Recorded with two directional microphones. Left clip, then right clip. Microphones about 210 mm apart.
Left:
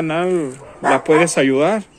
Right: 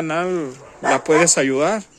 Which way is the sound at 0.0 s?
5° right (ahead or behind).